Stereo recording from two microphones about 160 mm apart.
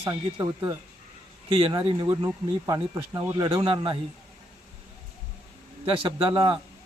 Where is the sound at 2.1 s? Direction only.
20° right (ahead or behind).